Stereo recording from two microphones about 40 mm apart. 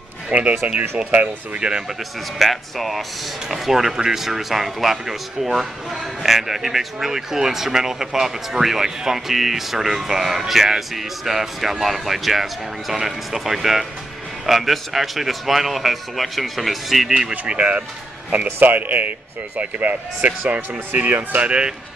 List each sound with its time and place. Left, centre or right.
0.3 s speech: right
1.1 s speech: right
1.6 s speech: right
2.3 s speech: centre
17.3 s speech: right
20.2 s speech: right
21.0 s speech: right
21.5 s speech: right